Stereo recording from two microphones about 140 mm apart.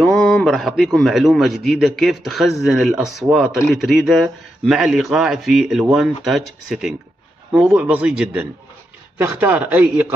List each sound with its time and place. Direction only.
0.0 s a man's voice: 5° left (ahead or behind); by 10.1 s 10° right (ahead or behind)